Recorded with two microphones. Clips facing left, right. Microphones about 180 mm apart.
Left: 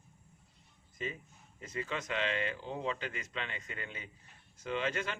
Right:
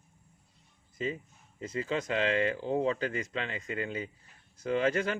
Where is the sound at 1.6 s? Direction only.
30° right (ahead or behind).